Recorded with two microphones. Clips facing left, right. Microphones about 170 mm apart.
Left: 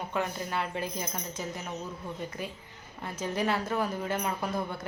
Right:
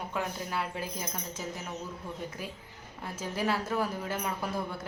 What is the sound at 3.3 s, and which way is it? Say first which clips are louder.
Speech: left 1 dB; 5° right (ahead or behind).